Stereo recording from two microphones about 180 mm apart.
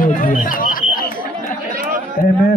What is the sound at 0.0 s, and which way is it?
Chatter, 50° left (ahead or behind).